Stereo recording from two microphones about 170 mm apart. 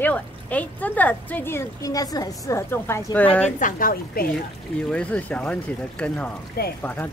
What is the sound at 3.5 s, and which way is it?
Speech, 50° left (ahead or behind).